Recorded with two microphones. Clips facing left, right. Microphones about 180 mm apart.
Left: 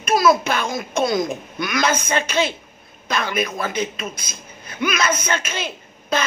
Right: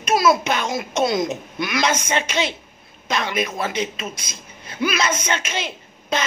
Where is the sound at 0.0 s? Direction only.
25° right (ahead or behind).